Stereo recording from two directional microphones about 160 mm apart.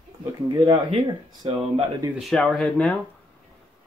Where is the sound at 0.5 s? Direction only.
25° right (ahead or behind).